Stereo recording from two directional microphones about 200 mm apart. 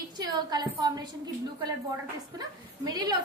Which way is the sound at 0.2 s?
20° right (ahead or behind).